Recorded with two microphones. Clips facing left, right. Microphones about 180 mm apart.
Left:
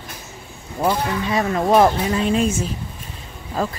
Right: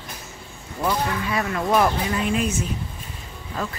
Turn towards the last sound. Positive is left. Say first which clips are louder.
# left 6 dB
turn(degrees=30)  # may be behind; listen again after turning